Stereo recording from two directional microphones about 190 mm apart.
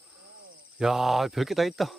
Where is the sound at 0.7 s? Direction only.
Centre (ahead or behind).